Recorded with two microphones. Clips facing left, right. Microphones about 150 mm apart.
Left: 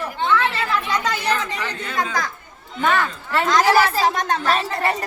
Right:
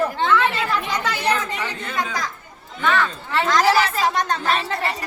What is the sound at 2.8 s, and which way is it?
Speech, 45° left (ahead or behind).